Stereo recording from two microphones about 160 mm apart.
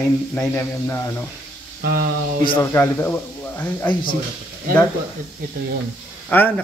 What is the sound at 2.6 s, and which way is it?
A man's voice, 15° left (ahead or behind).